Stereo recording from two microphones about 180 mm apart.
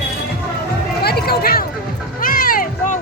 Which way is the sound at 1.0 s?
60° left (ahead or behind).